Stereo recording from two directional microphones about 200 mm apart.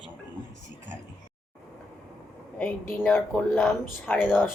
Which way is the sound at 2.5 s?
10° left (ahead or behind).